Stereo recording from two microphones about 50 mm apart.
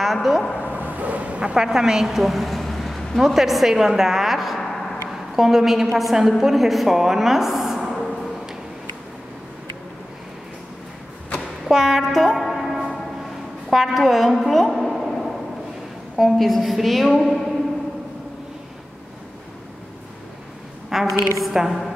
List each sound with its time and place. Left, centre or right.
0.0 s a woman's voice: centre
0.6 s vehicle: left
0.8 s a woman's voice: right; by 4.6 s centre
4.6 s a sound: centre
5.3 s a woman's voice: centre
7.9 s a sound: centre
11.6 s a woman's voice: centre
12.4 s music: centre
13.7 s a woman's voice: centre
20.9 s a sound: centre
21.4 s a woman's voice: centre